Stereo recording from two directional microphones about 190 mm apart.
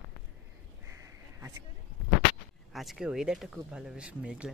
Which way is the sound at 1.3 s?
15° right (ahead or behind).